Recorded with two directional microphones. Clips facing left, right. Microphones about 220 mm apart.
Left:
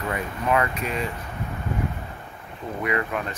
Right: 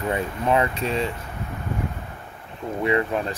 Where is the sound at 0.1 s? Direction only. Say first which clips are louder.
Right 2 dB; 25° right (ahead or behind).